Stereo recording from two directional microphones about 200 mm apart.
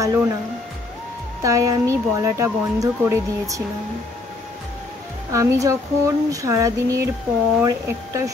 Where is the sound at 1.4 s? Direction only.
15° right (ahead or behind).